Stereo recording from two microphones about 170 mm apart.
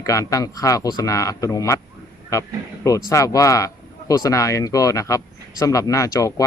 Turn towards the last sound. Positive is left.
turn(degrees=20)  # may be behind; listen again after turning